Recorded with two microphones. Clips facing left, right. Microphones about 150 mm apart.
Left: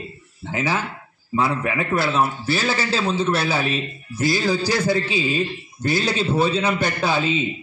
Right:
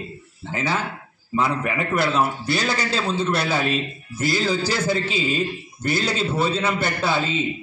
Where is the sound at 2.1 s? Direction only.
5° left (ahead or behind).